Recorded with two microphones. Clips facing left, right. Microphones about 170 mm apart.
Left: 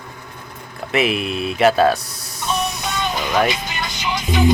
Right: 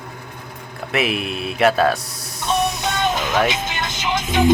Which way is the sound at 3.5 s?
50° right (ahead or behind).